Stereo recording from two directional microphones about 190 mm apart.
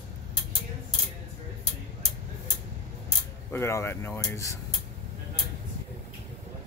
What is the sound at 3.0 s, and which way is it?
Speech, 15° left (ahead or behind).